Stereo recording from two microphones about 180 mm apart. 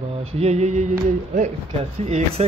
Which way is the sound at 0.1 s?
35° right (ahead or behind).